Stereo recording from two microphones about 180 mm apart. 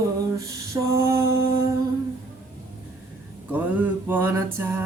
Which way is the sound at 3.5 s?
10° right (ahead or behind).